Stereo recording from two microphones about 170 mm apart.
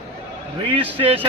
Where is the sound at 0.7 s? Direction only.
35° right (ahead or behind).